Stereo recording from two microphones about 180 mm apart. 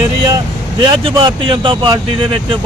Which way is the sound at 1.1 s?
25° right (ahead or behind).